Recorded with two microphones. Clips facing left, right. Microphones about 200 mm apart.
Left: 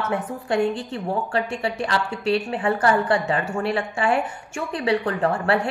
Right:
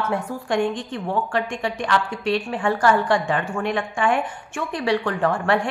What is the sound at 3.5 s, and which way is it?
A woman's voice, 35° left (ahead or behind).